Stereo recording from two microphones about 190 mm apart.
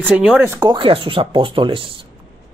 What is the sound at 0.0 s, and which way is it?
Speech, 5° right (ahead or behind).